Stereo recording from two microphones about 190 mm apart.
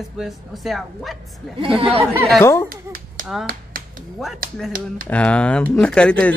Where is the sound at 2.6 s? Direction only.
50° right (ahead or behind).